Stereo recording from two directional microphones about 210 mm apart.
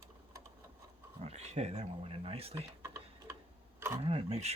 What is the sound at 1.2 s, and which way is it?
Speech, 30° right (ahead or behind).